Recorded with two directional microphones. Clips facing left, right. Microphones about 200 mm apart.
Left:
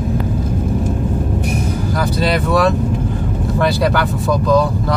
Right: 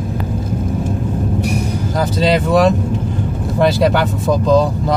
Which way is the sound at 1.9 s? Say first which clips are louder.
Right 3 dB; 20° right (ahead or behind).